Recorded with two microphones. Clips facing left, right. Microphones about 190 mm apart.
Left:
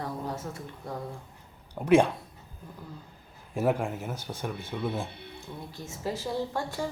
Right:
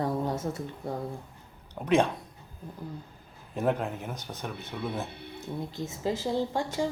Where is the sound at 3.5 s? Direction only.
10° left (ahead or behind).